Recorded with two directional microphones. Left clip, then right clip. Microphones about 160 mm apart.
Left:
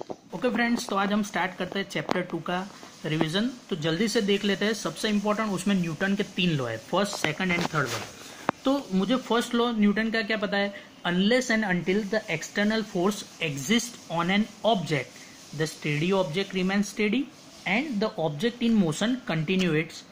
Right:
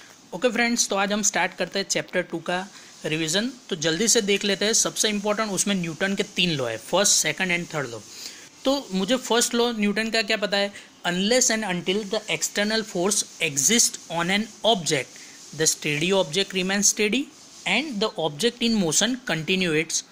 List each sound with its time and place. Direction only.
0.3 s speech: 30° right (ahead or behind)